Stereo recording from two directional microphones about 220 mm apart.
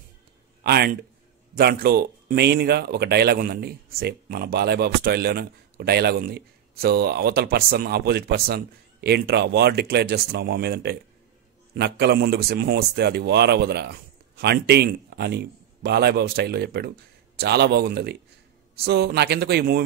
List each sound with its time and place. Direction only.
0.7 s speech: 45° right (ahead or behind)